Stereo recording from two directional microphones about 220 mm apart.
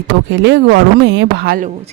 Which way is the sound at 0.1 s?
55° right (ahead or behind).